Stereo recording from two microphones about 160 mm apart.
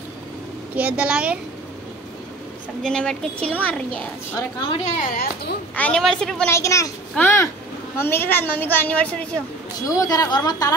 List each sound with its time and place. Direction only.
0.7 s a child's voice: 10° right (ahead or behind)
2.8 s a woman's voice: 5° left (ahead or behind)
4.6 s a woman's voice: 40° left (ahead or behind)
5.1 s speech: 65° left (ahead or behind)
5.8 s speech: 5° left (ahead or behind)
6.5 s a woman's voice: 20° left (ahead or behind)
9.8 s a woman's voice: 20° left (ahead or behind)